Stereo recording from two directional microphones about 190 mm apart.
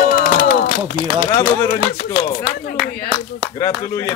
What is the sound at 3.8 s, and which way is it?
Speech, 20° left (ahead or behind).